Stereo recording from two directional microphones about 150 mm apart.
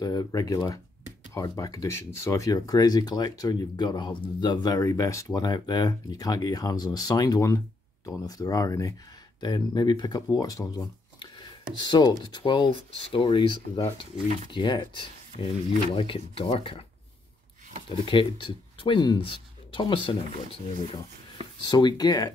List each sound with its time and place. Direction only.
0.0 s speech: 25° left (ahead or behind)
10.3 s a sound: 25° left (ahead or behind)
11.8 s speech: 30° left (ahead or behind)
18.0 s speech: 35° left (ahead or behind)